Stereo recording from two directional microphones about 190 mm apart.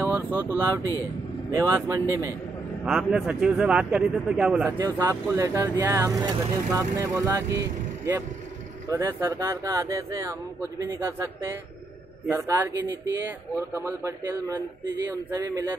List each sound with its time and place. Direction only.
0.0 s speech: 10° right (ahead or behind)
2.8 s speech: 5° right (ahead or behind)
4.6 s speech: 15° right (ahead or behind)